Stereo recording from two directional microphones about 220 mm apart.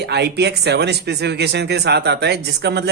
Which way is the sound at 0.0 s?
50° right (ahead or behind).